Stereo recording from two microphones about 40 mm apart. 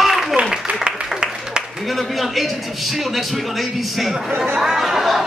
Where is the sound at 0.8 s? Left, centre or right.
Right.